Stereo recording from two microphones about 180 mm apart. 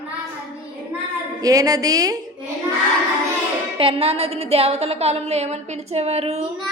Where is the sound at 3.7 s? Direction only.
30° right (ahead or behind).